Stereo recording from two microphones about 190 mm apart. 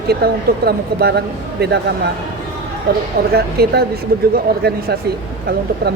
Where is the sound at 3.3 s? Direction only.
55° right (ahead or behind).